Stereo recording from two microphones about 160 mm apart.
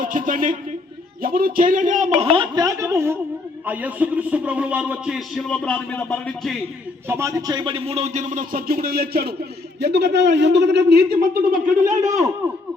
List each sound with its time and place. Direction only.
0.0 s a man's voice: 60° right (ahead or behind)
2.3 s speech: 30° right (ahead or behind)
2.6 s a man's voice: 20° right (ahead or behind); by 6.6 s 5° left (ahead or behind)
7.1 s speech: 15° right (ahead or behind); by 9.3 s 75° right (ahead or behind)
9.8 s a man's voice: 90° right; by 11.9 s 70° right (ahead or behind)